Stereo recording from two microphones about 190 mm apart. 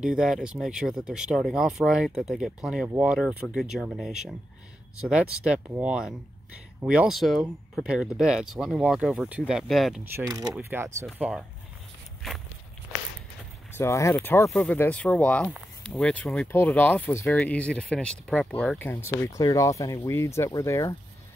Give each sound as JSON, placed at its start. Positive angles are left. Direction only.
{"t": 0.0, "sound": "speech", "side_deg": -5}
{"t": 10.1, "sound": "speech", "side_deg": -15}
{"t": 13.7, "sound": "speech", "side_deg": 15}